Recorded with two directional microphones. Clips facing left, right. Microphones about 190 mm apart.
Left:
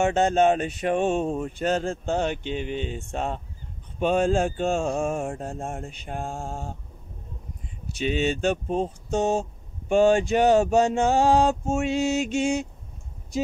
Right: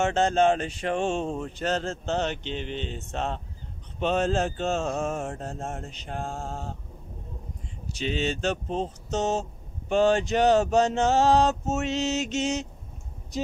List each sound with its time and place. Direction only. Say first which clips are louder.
0.0 s speech: left 2 dB; 15° left (ahead or behind)
8.0 s speech: left 4 dB; 15° left (ahead or behind)